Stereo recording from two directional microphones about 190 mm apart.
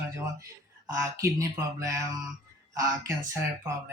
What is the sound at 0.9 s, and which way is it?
Speech, 15° right (ahead or behind).